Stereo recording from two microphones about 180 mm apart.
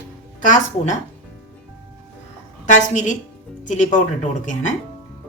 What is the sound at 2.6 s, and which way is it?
Speech, 40° left (ahead or behind).